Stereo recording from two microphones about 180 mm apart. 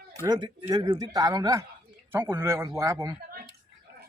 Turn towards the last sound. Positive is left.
turn(degrees=-20)  # may be behind; listen again after turning